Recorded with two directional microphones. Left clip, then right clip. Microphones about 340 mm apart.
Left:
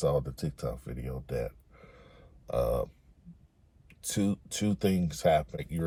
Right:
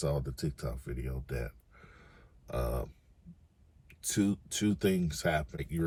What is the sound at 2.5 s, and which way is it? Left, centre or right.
Speech, centre.